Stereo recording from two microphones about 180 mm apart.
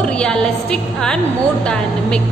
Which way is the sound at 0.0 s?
5° left (ahead or behind).